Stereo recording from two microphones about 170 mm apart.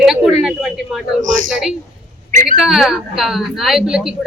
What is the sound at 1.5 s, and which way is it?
A woman's voice, 5° right (ahead or behind).